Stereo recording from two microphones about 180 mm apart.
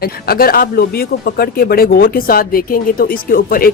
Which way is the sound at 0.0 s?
55° left (ahead or behind).